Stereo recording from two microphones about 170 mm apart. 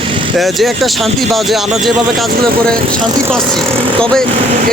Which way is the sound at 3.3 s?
5° left (ahead or behind).